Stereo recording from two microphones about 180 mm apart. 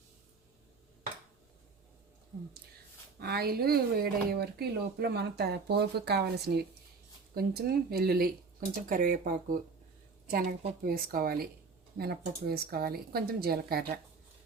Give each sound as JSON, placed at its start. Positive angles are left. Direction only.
{"t": 3.2, "sound": "speech", "side_deg": -60}
{"t": 10.8, "sound": "speech", "side_deg": -55}